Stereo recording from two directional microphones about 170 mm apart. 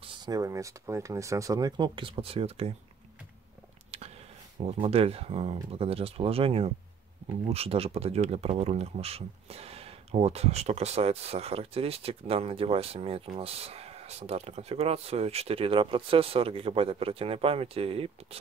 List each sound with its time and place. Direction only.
0.0 s speech: 25° right (ahead or behind)
4.6 s speech: 35° right (ahead or behind)